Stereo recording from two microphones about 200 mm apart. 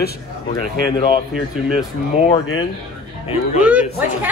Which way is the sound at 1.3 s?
Centre (ahead or behind).